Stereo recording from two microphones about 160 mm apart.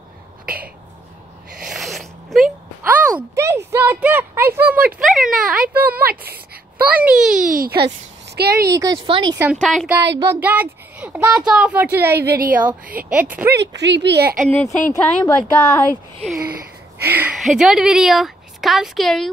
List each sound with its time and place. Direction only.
1.7 s a sound: centre (ahead or behind)
2.8 s speech: 10° right (ahead or behind)
4.9 s a woman's voice: centre (ahead or behind)
5.9 s speech: 75° right (ahead or behind)
6.9 s a woman's voice: 10° right (ahead or behind)
7.5 s speech: 75° right (ahead or behind)
8.6 s a woman's voice: 25° right (ahead or behind)
9.4 s speech: 10° right (ahead or behind)
9.7 s a woman's voice: centre (ahead or behind)
10.1 s speech: 10° right (ahead or behind)
13.5 s speech: 90° right; by 14.5 s 65° right (ahead or behind)
14.5 s speech: 10° left (ahead or behind)
17.0 s a woman's voice: 10° right (ahead or behind)